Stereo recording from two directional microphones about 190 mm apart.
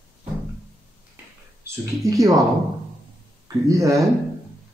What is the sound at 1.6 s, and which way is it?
Speech, 20° right (ahead or behind).